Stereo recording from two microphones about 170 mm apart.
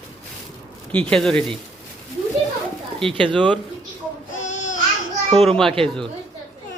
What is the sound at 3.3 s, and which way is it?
Speech, 10° left (ahead or behind).